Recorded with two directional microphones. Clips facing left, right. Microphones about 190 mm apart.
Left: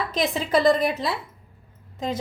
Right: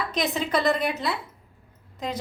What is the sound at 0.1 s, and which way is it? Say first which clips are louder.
Speech: left 4 dB; 30° left (ahead or behind).